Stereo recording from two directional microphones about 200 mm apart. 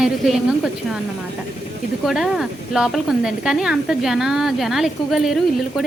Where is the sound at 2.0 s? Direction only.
Centre (ahead or behind).